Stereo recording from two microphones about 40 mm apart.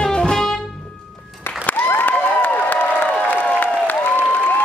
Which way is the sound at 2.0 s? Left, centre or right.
Left.